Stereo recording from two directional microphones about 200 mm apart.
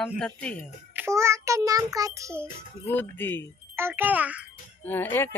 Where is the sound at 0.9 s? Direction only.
15° right (ahead or behind).